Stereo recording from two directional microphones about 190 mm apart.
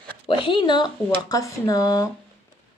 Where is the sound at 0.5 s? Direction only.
25° left (ahead or behind).